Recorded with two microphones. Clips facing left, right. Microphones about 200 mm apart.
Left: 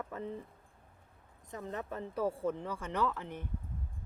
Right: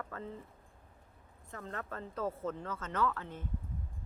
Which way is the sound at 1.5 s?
15° left (ahead or behind).